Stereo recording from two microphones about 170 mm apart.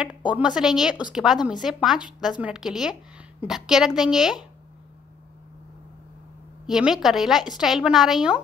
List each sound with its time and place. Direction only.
0.3 s a woman's voice: 5° right (ahead or behind)
2.0 s speech: 25° left (ahead or behind)
2.2 s a woman's voice: 5° right (ahead or behind)
6.6 s a woman's voice: 5° right (ahead or behind)